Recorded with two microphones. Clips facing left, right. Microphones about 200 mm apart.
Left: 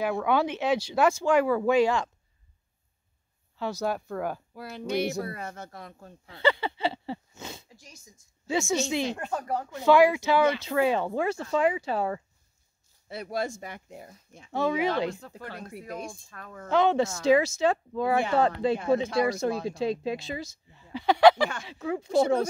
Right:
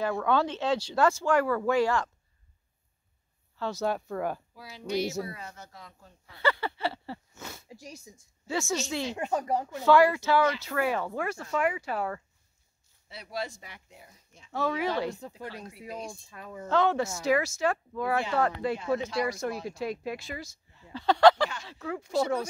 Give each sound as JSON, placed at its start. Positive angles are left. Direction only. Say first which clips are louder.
{"t": 0.0, "sound": "speech", "louder": "left 1 dB", "side_deg": 10}
{"t": 3.8, "sound": "speech", "louder": "right 1 dB", "side_deg": 5}
{"t": 4.6, "sound": "a woman's voice", "louder": "left 4 dB", "side_deg": 55}
{"t": 6.2, "sound": "speech", "louder": "left 3 dB", "side_deg": 25}
{"t": 7.7, "sound": "speech", "louder": "right 8 dB", "side_deg": -35}
{"t": 8.5, "sound": "speech", "louder": "left 4 dB", "side_deg": 10}
{"t": 9.1, "sound": "speech", "louder": "right 2 dB", "side_deg": -10}
{"t": 9.8, "sound": "speech", "louder": "left 2 dB", "side_deg": 15}
{"t": 13.1, "sound": "speech", "louder": "left 5 dB", "side_deg": 50}
{"t": 14.5, "sound": "speech", "louder": "left 3 dB", "side_deg": 20}
{"t": 15.0, "sound": "speech", "louder": "left 1 dB", "side_deg": -20}
{"t": 15.4, "sound": "speech", "louder": "left 3 dB", "side_deg": 55}
{"t": 16.1, "sound": "speech", "louder": "right 1 dB", "side_deg": -10}
{"t": 16.6, "sound": "speech", "louder": "left 3 dB", "side_deg": 15}